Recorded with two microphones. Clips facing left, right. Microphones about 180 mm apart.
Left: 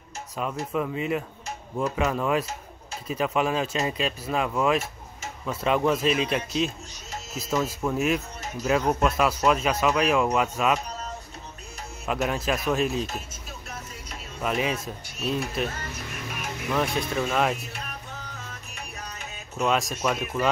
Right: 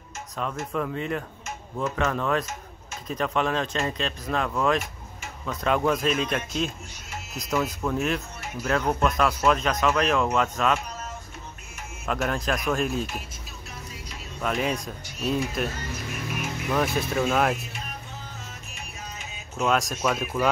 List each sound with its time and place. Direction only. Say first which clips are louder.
0.4 s a man's voice: left 1 dB; 5° left (ahead or behind)
12.1 s a man's voice: even; 5° left (ahead or behind)
14.4 s a man's voice: even; 5° left (ahead or behind)
16.7 s a man's voice: right 1 dB; 5° right (ahead or behind)
19.5 s a man's voice: even; centre (ahead or behind)